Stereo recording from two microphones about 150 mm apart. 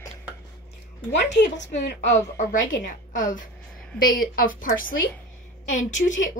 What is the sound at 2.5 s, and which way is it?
Speech, 60° left (ahead or behind).